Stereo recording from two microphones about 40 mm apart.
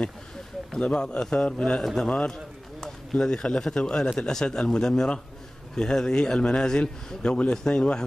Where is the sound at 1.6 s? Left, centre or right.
Centre.